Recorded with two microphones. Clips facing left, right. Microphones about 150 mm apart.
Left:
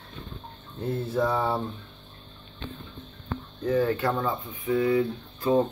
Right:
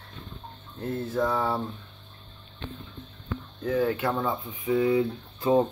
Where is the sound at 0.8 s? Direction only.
5° left (ahead or behind).